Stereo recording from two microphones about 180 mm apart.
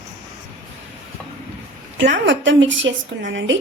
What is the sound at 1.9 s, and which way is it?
A woman's voice, 85° right.